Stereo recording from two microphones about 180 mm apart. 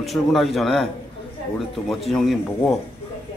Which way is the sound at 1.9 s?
Centre (ahead or behind).